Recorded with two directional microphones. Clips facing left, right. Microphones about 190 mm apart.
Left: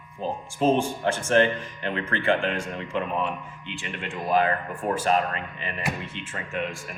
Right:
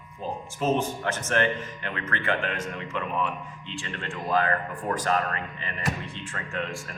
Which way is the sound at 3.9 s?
15° left (ahead or behind).